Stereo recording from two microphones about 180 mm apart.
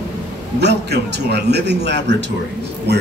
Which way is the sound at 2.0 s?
80° right.